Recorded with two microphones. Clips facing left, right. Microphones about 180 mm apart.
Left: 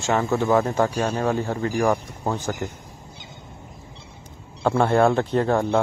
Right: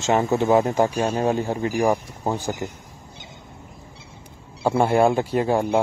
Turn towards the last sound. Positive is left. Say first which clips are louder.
# even
turn(degrees=-10)  # may be behind; listen again after turning